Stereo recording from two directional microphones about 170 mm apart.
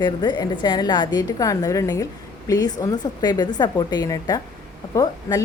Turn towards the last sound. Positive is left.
turn(degrees=20)  # may be behind; listen again after turning